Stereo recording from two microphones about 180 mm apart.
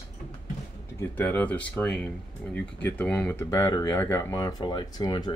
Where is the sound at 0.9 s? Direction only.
10° left (ahead or behind).